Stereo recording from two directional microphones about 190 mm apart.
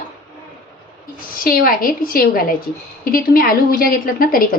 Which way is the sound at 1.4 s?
50° left (ahead or behind).